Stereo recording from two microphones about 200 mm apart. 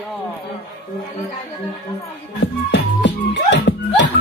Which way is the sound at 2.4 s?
60° left (ahead or behind).